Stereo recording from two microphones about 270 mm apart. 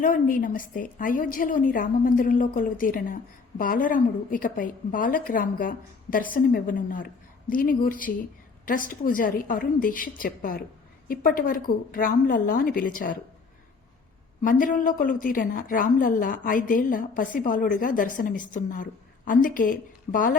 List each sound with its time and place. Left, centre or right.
0.0 s a woman's voice: left
14.4 s a woman's voice: left